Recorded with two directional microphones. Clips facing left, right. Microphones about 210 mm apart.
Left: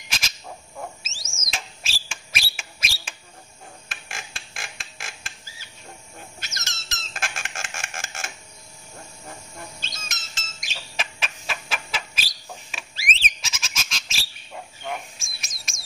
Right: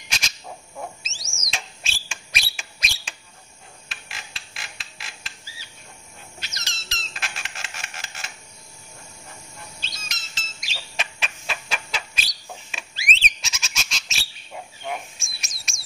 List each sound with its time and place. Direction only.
0.7 s frog: centre (ahead or behind)
1.4 s bird: 5° left (ahead or behind)
3.9 s a sound: 50° left (ahead or behind)
9.8 s bird: 50° left (ahead or behind)
11.0 s bird: centre (ahead or behind)